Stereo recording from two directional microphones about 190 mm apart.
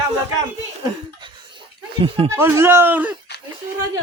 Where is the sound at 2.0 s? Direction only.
30° right (ahead or behind).